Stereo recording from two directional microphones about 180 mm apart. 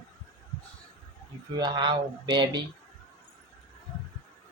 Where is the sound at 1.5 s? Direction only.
25° right (ahead or behind).